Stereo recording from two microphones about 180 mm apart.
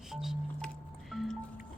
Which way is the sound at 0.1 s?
Centre (ahead or behind).